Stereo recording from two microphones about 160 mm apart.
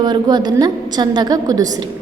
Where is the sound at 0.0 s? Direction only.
25° right (ahead or behind).